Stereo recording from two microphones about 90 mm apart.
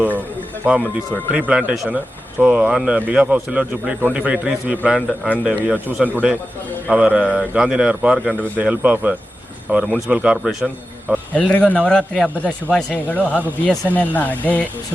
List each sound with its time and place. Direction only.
1.3 s a man's voice: 15° right (ahead or behind)
4.9 s a man's voice: 5° right (ahead or behind)
5.4 s a man's voice: 15° right (ahead or behind)
11.3 s speech: 15° left (ahead or behind)